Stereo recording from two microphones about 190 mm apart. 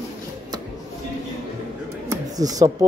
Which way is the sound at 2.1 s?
20° right (ahead or behind).